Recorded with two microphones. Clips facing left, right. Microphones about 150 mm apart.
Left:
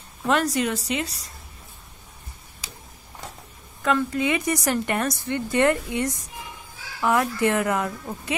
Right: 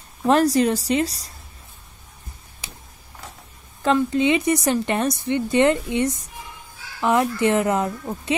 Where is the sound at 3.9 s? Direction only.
25° right (ahead or behind).